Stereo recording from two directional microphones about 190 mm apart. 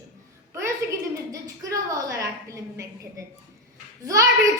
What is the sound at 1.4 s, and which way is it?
A woman's voice, 20° right (ahead or behind).